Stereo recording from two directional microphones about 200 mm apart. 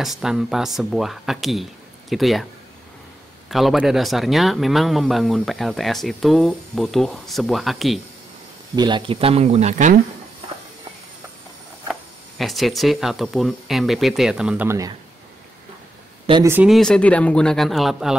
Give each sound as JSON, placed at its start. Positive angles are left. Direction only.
{"t": 0.0, "sound": "a man's voice", "side_deg": 0}
{"t": 3.4, "sound": "a man's voice", "side_deg": 0}
{"t": 8.7, "sound": "speech", "side_deg": -20}
{"t": 11.9, "sound": "a man's voice", "side_deg": 0}
{"t": 16.4, "sound": "a man's voice", "side_deg": -5}